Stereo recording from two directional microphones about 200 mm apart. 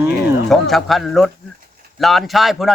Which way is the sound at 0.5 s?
Centre (ahead or behind).